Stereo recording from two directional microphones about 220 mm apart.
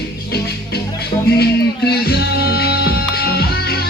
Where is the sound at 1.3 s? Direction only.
45° left (ahead or behind).